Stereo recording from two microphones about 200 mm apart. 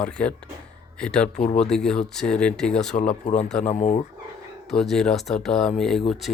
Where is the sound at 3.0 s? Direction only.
35° left (ahead or behind).